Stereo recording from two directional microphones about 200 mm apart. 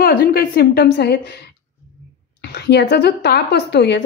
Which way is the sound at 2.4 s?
55° left (ahead or behind).